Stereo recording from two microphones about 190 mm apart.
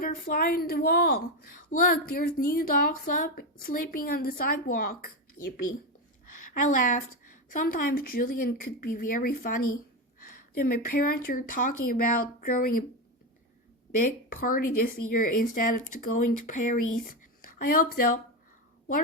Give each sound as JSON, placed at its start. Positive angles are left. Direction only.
{"t": 0.0, "sound": "a woman's voice", "side_deg": 50}
{"t": 14.0, "sound": "a woman's voice", "side_deg": 45}